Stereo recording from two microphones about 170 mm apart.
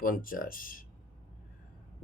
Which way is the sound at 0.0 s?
55° left (ahead or behind).